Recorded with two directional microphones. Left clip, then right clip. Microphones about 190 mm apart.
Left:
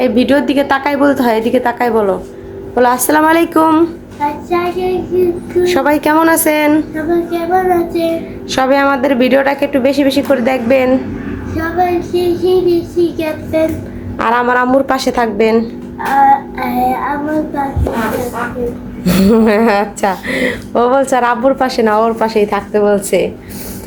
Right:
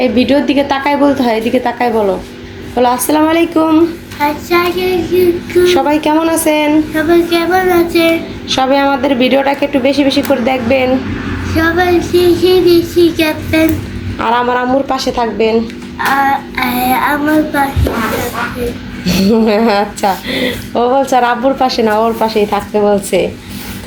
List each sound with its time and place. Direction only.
0.0 s speech: 10° left (ahead or behind)
4.4 s child singing: 5° right (ahead or behind)
5.6 s speech: 10° left (ahead or behind)
5.9 s speech: 20° left (ahead or behind)
6.9 s child singing: 5° left (ahead or behind)
14.2 s speech: 5° left (ahead or behind)
16.0 s child singing: centre (ahead or behind)
19.0 s speech: 20° left (ahead or behind); by 23.3 s centre (ahead or behind)